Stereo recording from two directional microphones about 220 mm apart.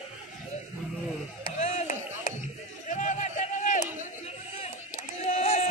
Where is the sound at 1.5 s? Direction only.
35° left (ahead or behind).